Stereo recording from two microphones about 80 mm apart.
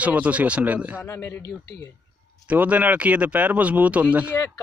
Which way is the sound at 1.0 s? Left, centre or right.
Left.